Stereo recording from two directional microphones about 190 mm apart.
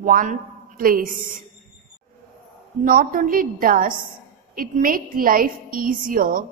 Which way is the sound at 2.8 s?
45° right (ahead or behind).